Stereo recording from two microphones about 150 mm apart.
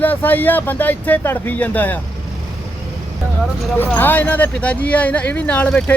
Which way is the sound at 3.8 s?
15° left (ahead or behind).